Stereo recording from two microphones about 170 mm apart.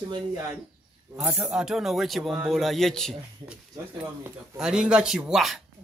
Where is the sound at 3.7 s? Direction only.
15° right (ahead or behind).